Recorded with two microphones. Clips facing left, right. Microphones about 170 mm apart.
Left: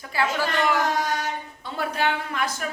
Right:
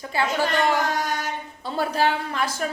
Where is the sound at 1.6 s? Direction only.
35° right (ahead or behind).